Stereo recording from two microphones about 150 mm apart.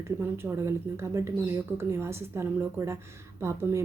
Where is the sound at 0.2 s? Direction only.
15° right (ahead or behind).